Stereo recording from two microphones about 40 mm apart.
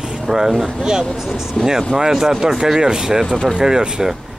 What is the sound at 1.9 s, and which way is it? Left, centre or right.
Speech, centre.